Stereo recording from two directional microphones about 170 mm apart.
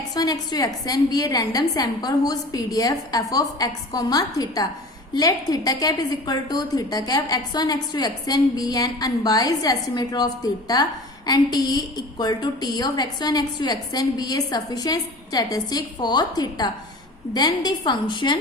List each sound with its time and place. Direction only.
0.1 s a woman's voice: 25° left (ahead or behind)